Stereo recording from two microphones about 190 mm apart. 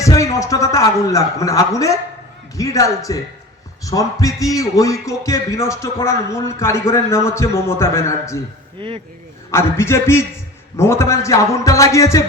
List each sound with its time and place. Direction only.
0.0 s speech: 15° left (ahead or behind)
8.8 s speech: 25° right (ahead or behind)
9.5 s speech: 15° left (ahead or behind)